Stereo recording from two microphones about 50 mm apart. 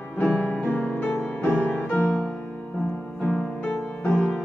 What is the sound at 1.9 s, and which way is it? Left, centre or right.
Music, centre.